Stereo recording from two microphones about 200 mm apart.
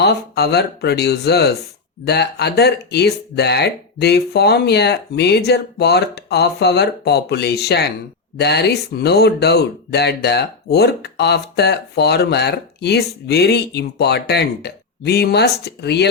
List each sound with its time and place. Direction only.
0.0 s speech: 55° left (ahead or behind)